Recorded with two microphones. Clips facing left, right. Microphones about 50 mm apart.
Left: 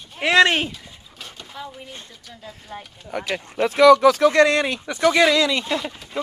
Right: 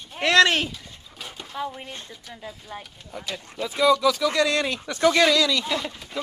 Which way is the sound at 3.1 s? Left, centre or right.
Left.